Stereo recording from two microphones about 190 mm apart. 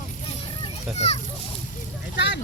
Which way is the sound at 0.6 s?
35° left (ahead or behind).